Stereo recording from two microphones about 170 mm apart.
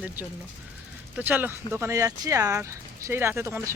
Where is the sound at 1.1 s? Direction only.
10° right (ahead or behind).